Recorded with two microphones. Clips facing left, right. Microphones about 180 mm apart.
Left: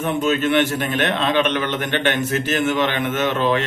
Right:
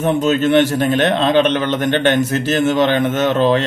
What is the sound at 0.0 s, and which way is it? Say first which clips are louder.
A man's voice: right 5 dB; 40° right (ahead or behind).